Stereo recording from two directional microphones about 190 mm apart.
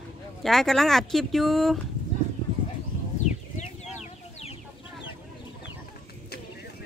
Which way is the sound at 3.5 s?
40° left (ahead or behind).